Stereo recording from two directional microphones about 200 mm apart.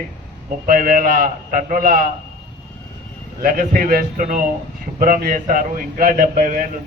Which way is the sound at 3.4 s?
45° right (ahead or behind).